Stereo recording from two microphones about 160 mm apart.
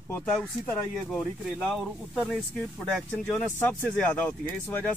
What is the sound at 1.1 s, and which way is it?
Speech, 5° left (ahead or behind).